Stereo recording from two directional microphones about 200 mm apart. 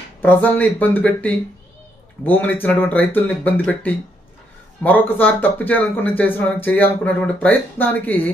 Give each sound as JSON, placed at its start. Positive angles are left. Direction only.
{"t": 0.2, "sound": "speech", "side_deg": 10}